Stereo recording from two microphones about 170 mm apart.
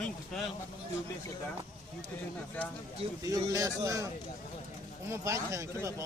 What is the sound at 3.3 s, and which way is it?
Speech, 20° right (ahead or behind).